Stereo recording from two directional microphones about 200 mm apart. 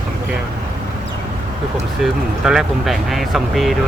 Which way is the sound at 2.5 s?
Centre (ahead or behind).